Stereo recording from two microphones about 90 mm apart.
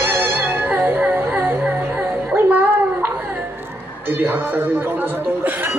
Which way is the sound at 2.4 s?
20° right (ahead or behind).